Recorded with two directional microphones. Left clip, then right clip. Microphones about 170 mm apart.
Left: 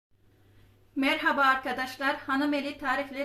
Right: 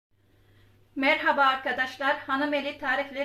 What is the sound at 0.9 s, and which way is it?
A woman's voice, 55° left (ahead or behind).